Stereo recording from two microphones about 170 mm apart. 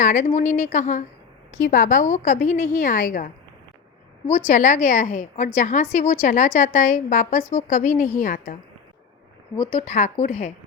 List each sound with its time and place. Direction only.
0.0 s a woman's voice: 50° left (ahead or behind)
4.3 s a woman's voice: 40° left (ahead or behind)
9.8 s a woman's voice: 45° left (ahead or behind)